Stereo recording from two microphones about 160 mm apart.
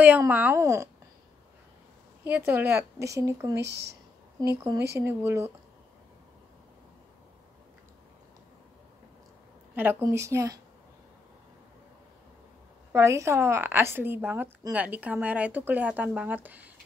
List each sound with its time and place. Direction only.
0.3 s speech: 10° right (ahead or behind)
2.2 s speech: 15° right (ahead or behind)
3.6 s speech: 90° right
4.6 s speech: 20° right (ahead or behind)
9.8 s speech: 15° right (ahead or behind)
12.9 s speech: 20° right (ahead or behind)